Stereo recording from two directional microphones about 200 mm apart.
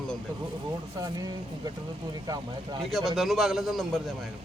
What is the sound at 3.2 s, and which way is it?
Speech, centre (ahead or behind).